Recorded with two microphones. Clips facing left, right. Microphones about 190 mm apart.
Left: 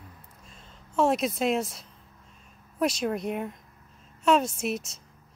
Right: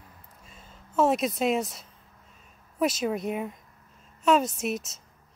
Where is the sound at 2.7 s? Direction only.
5° right (ahead or behind).